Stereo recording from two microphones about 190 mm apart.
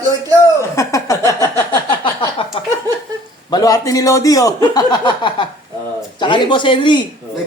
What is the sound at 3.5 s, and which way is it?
Speech, 20° left (ahead or behind).